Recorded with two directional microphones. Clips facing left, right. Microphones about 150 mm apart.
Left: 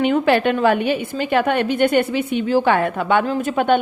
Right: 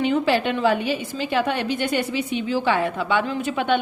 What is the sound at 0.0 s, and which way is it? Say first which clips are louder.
A woman's voice: left 4 dB; 60° left (ahead or behind).